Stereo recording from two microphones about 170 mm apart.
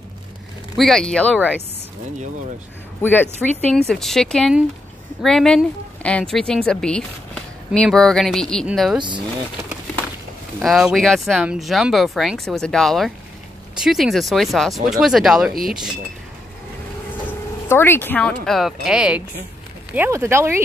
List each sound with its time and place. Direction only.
0.7 s speech: centre (ahead or behind)
3.0 s speech: 10° left (ahead or behind)
9.0 s speech: 25° right (ahead or behind)
10.6 s speech: centre (ahead or behind)
17.6 s speech: 15° left (ahead or behind); by 20.6 s 15° right (ahead or behind)